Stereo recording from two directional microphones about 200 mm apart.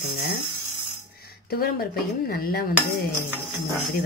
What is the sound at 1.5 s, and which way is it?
Speech, 50° left (ahead or behind).